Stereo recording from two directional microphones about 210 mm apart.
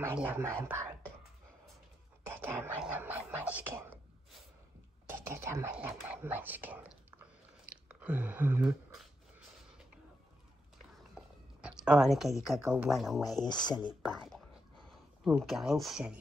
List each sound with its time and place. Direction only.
0.0 s speech: 10° right (ahead or behind)
2.4 s speech: 10° right (ahead or behind)
5.1 s speech: 10° right (ahead or behind)
10.9 s a sound: 5° right (ahead or behind)
12.6 s speech: 5° right (ahead or behind)
13.5 s speech: 20° left (ahead or behind)
13.7 s speech: centre (ahead or behind)